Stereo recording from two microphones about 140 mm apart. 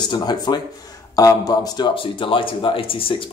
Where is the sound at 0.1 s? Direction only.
30° left (ahead or behind).